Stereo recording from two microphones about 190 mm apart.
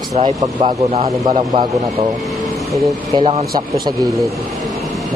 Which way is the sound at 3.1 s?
30° right (ahead or behind).